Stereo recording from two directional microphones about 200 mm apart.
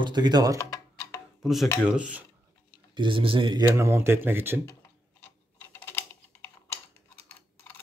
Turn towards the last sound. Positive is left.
turn(degrees=10)  # may be behind; listen again after turning